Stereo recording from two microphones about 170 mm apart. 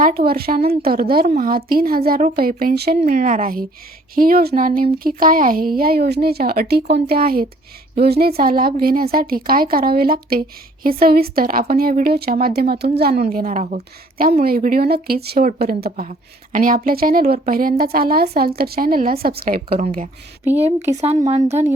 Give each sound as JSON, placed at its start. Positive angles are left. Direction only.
{"t": 0.0, "sound": "speech", "side_deg": -60}
{"t": 3.0, "sound": "speech", "side_deg": -45}
{"t": 14.2, "sound": "speech", "side_deg": -60}
{"t": 20.4, "sound": "speech", "side_deg": -10}